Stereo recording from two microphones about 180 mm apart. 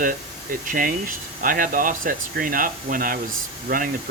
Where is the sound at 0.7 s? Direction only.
50° right (ahead or behind).